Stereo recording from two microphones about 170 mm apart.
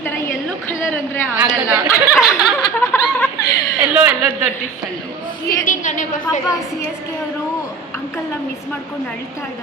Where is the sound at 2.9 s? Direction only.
20° left (ahead or behind).